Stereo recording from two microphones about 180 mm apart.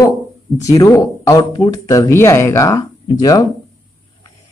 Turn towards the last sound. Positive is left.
turn(degrees=20)  # may be behind; listen again after turning